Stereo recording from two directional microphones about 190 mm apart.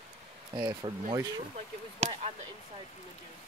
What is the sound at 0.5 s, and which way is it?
Speech, 20° right (ahead or behind).